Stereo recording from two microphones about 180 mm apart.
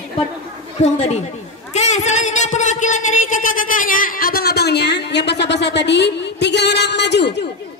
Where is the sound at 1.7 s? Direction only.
40° left (ahead or behind); by 7.4 s 70° left (ahead or behind).